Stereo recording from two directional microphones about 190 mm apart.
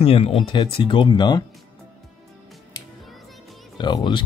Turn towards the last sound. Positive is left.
turn(degrees=25)  # may be behind; listen again after turning